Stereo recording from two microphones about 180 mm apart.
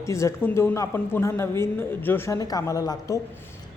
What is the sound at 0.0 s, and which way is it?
A woman's voice, 15° left (ahead or behind).